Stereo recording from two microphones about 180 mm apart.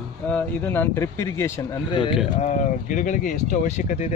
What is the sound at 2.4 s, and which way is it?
Speech, 45° left (ahead or behind).